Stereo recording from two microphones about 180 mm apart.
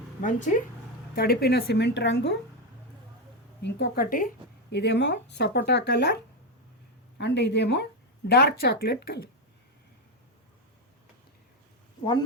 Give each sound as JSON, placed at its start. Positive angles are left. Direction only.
{"t": 0.2, "sound": "speech", "side_deg": 45}
{"t": 1.1, "sound": "a woman's voice", "side_deg": 60}
{"t": 3.6, "sound": "speech", "side_deg": 60}
{"t": 4.7, "sound": "speech", "side_deg": 70}
{"t": 7.2, "sound": "a woman's voice", "side_deg": 70}